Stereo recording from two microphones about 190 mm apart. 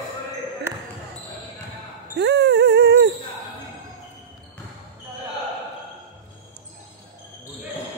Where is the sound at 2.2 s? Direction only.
60° right (ahead or behind).